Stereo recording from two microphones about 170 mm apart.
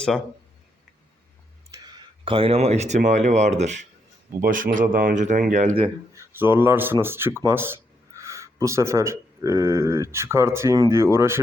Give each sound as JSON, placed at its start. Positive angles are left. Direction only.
{"t": 2.2, "sound": "speech", "side_deg": -30}
{"t": 4.4, "sound": "speech", "side_deg": -55}
{"t": 6.1, "sound": "speech", "side_deg": -10}